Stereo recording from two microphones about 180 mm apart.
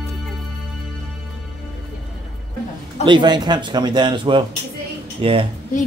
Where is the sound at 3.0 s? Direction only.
25° right (ahead or behind).